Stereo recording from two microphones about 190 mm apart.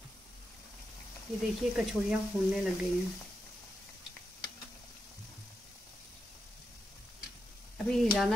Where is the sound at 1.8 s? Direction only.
Centre (ahead or behind).